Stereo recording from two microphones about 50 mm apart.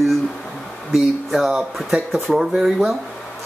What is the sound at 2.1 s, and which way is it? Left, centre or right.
Speech, centre.